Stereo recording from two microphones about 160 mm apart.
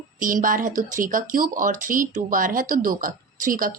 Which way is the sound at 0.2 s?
60° right (ahead or behind).